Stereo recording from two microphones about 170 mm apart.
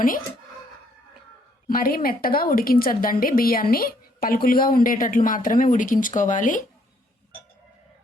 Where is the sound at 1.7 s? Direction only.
55° left (ahead or behind).